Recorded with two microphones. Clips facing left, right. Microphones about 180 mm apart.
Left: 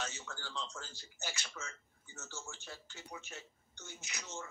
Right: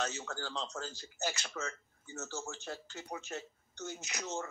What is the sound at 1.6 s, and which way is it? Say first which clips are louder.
Speech: right 8 dB; 60° right (ahead or behind).